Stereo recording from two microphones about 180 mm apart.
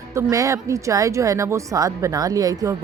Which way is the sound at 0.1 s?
15° right (ahead or behind).